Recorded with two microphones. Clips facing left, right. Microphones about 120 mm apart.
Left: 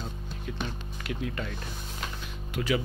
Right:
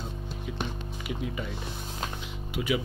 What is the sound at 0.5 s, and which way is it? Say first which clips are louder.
Speech: even; 5° right (ahead or behind).